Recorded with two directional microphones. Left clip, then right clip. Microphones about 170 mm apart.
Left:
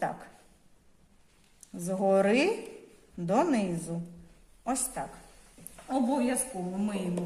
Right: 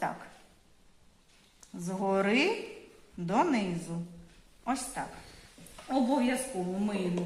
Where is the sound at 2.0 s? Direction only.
70° left (ahead or behind).